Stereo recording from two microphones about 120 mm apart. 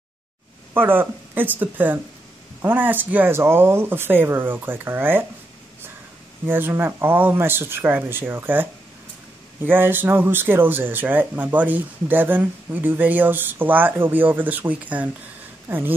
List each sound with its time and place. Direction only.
0.7 s speech: 15° right (ahead or behind)
6.4 s speech: 20° right (ahead or behind)
9.7 s speech: 15° right (ahead or behind)